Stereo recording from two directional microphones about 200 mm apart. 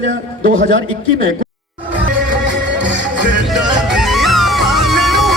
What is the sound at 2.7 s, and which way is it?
Music, 60° right (ahead or behind).